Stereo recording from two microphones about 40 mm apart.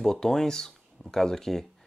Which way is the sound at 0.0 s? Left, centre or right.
Centre.